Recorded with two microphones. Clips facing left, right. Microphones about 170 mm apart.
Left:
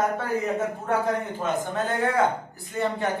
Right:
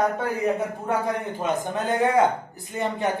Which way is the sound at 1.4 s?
15° right (ahead or behind).